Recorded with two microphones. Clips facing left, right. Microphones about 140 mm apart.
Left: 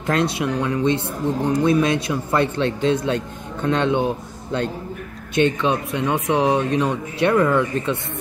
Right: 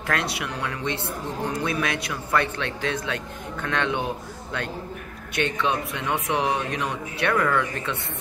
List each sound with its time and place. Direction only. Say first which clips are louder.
0.0 s speech: left 7 dB; 25° left (ahead or behind)
5.3 s speech: left 6 dB; 20° left (ahead or behind)